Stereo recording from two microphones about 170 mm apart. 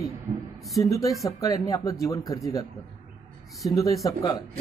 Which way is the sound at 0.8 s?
20° left (ahead or behind).